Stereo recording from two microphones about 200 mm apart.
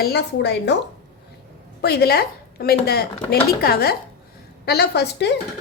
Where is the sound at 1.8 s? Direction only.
50° left (ahead or behind).